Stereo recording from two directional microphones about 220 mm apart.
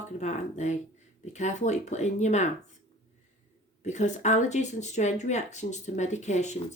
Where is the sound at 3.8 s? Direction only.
30° left (ahead or behind).